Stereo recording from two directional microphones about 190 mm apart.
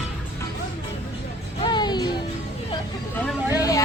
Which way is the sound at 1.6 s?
25° left (ahead or behind).